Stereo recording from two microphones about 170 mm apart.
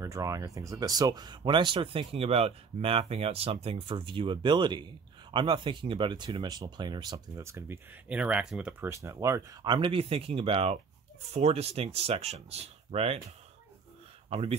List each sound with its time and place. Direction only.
0.0 s speech: 20° right (ahead or behind)
8.9 s speech: 15° right (ahead or behind); by 13.2 s 35° right (ahead or behind)
14.3 s speech: 35° right (ahead or behind)